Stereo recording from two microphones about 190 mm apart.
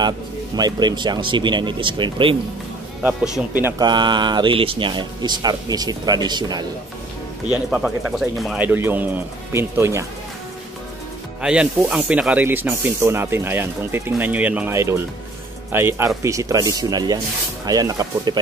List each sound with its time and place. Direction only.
0.6 s speech: 20° right (ahead or behind)
3.0 s speech: 10° right (ahead or behind)
3.6 s speech: 20° right (ahead or behind)
7.5 s speech: 5° right (ahead or behind)
11.4 s speech: 5° right (ahead or behind)